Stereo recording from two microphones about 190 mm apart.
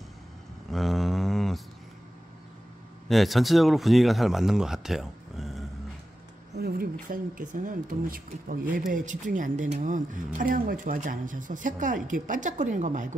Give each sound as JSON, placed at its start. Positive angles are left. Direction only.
{"t": 0.7, "sound": "a sound", "side_deg": 0}
{"t": 3.1, "sound": "speech", "side_deg": 0}
{"t": 6.5, "sound": "speech", "side_deg": -55}